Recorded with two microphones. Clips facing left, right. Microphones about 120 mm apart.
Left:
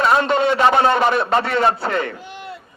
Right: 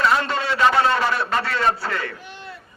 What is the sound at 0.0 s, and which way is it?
A man's voice, 25° left (ahead or behind).